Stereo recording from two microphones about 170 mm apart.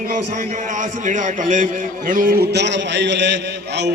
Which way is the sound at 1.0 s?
50° right (ahead or behind).